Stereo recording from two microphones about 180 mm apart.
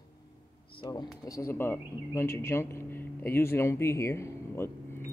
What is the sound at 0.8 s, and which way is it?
Speech, 20° left (ahead or behind).